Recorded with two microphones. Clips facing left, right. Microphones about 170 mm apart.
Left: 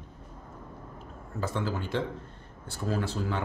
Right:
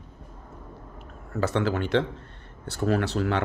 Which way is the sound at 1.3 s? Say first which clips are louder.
Right 7 dB; 75° right (ahead or behind).